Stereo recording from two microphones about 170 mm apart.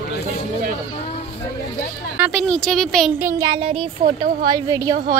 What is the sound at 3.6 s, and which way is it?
A woman's voice, 35° right (ahead or behind).